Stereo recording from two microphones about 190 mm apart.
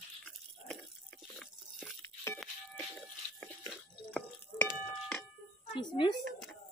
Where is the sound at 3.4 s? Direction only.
5° left (ahead or behind).